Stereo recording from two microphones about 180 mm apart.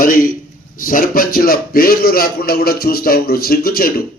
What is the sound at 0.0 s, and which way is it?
A man's voice, 50° left (ahead or behind).